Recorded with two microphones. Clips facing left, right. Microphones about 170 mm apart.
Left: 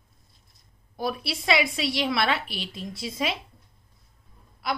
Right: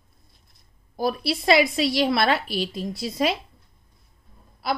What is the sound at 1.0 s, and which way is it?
A woman's voice, 40° right (ahead or behind).